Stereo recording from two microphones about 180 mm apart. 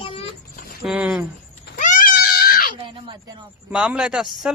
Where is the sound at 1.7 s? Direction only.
45° left (ahead or behind).